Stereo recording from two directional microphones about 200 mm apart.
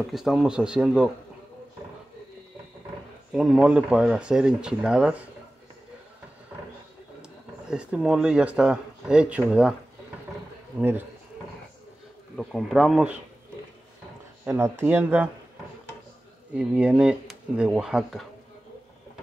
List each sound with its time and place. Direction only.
0.1 s speech: centre (ahead or behind)
3.3 s speech: 5° right (ahead or behind)
7.7 s speech: 5° right (ahead or behind)
10.8 s speech: 10° right (ahead or behind)
12.4 s speech: centre (ahead or behind)
14.4 s speech: 10° right (ahead or behind)
16.5 s speech: 5° right (ahead or behind)